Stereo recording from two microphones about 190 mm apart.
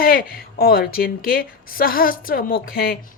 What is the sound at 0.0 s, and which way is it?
A woman's voice, 50° left (ahead or behind).